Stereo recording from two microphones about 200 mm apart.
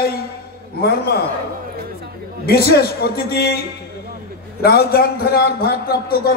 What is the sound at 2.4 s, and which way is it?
A man's voice, 50° left (ahead or behind).